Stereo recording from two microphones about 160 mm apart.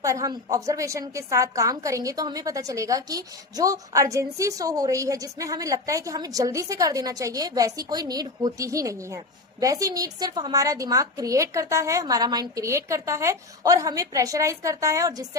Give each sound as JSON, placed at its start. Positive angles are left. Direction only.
{"t": 0.0, "sound": "a woman's voice", "side_deg": -20}